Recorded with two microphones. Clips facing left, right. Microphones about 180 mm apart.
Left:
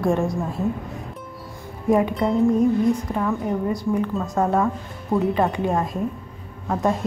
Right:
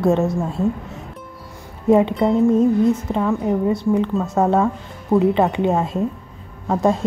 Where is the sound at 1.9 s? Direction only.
25° right (ahead or behind).